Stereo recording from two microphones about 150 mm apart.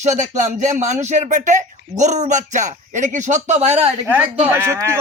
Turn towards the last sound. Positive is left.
turn(degrees=-20)  # may be behind; listen again after turning